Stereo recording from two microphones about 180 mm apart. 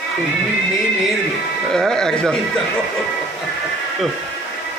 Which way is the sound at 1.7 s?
5° left (ahead or behind).